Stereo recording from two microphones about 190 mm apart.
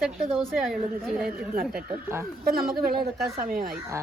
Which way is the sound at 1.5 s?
50° right (ahead or behind).